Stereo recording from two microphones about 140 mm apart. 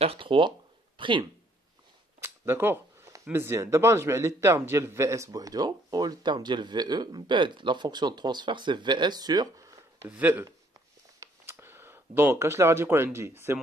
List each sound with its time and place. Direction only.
0.0 s speech: 40° right (ahead or behind)
2.1 s speech: 15° right (ahead or behind)
10.0 s speech: 10° right (ahead or behind)
11.1 s a sound: 15° right (ahead or behind)